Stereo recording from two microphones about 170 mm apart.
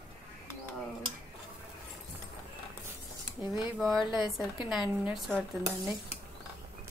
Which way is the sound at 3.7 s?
Centre (ahead or behind).